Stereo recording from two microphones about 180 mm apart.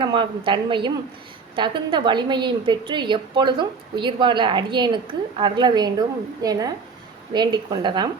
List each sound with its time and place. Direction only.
0.0 s a woman's voice: 25° right (ahead or behind)